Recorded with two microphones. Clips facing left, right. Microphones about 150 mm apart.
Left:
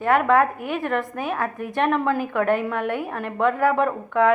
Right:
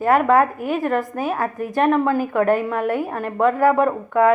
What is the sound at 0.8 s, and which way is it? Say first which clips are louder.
A woman's voice: right 3 dB; centre (ahead or behind).